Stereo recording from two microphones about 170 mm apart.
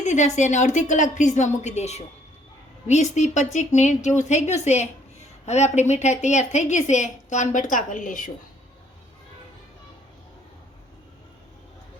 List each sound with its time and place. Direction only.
0.0 s a woman's voice: 45° left (ahead or behind)